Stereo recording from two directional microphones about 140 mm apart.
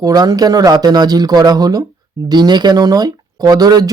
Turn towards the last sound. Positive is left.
turn(degrees=-30)  # may be behind; listen again after turning